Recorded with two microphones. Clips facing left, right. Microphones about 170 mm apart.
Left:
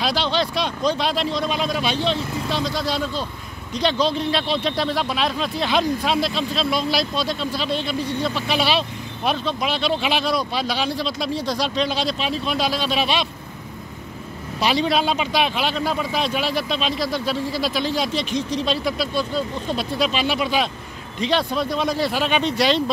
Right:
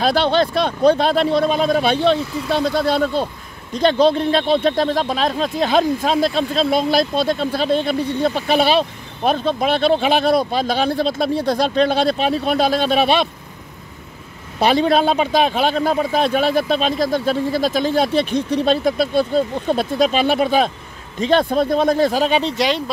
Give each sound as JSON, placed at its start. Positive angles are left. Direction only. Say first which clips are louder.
{"t": 0.0, "sound": "speech", "louder": "right 6 dB", "side_deg": -55}
{"t": 14.6, "sound": "speech", "louder": "right 5 dB", "side_deg": -50}